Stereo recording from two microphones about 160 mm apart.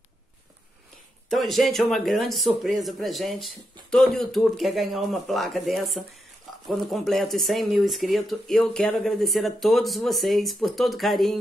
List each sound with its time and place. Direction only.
1.3 s speech: centre (ahead or behind)